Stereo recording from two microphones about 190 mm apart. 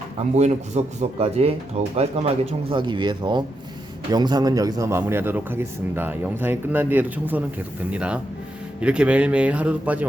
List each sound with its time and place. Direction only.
0.3 s a man's voice: 35° right (ahead or behind); by 10.1 s 10° right (ahead or behind)